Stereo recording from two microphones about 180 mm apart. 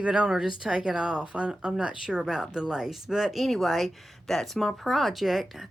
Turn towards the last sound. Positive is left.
turn(degrees=0)  # may be behind; listen again after turning